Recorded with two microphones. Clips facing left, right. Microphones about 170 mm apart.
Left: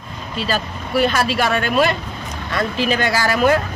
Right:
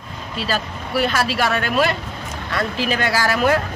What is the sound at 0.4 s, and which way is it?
Speech, 5° right (ahead or behind).